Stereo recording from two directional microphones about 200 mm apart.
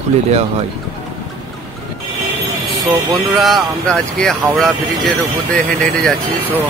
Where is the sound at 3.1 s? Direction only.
Centre (ahead or behind).